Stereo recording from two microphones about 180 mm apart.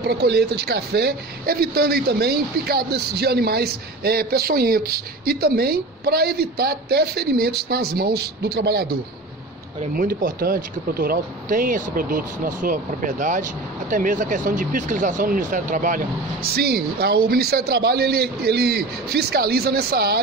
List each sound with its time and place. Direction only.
0.0 s speech: 65° right (ahead or behind)
9.9 s speech: 55° right (ahead or behind)
16.5 s speech: 60° right (ahead or behind)